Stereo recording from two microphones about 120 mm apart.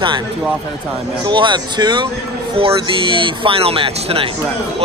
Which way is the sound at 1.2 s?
40° right (ahead or behind).